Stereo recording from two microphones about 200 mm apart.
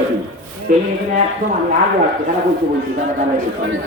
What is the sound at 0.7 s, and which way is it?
Speech, 40° right (ahead or behind).